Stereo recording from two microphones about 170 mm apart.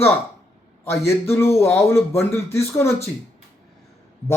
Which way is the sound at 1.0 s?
15° left (ahead or behind).